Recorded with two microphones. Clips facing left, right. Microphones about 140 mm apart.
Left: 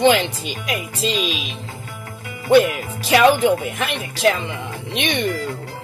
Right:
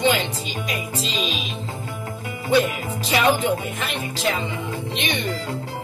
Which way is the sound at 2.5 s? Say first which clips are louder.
Left 5 dB; 70° left (ahead or behind).